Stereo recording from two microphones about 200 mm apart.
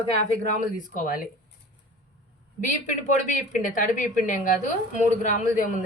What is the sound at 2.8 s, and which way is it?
A woman's voice, 40° left (ahead or behind).